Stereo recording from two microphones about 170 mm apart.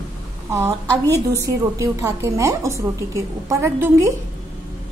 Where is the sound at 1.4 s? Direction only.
20° right (ahead or behind).